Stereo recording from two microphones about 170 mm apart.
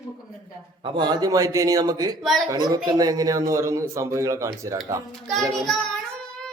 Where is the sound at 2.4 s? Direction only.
20° right (ahead or behind).